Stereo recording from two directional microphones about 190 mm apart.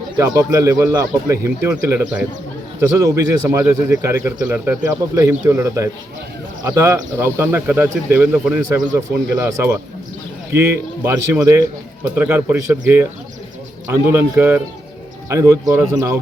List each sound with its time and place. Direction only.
0.2 s speech: 15° right (ahead or behind)